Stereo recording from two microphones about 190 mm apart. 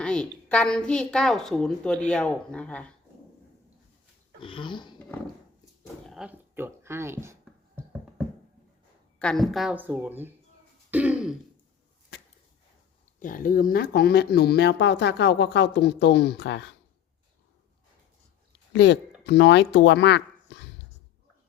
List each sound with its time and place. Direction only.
0.0 s a woman's voice: 5° left (ahead or behind)
4.4 s a sound: 25° left (ahead or behind)
5.8 s a sound: centre (ahead or behind)
9.1 s speech: 5° left (ahead or behind)
10.9 s throat clearing: 5° right (ahead or behind)
13.1 s speech: 45° left (ahead or behind); by 16.7 s 65° left (ahead or behind)
18.7 s speech: 65° left (ahead or behind)